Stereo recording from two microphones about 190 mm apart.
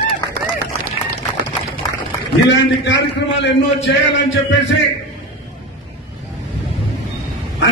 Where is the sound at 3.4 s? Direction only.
70° left (ahead or behind).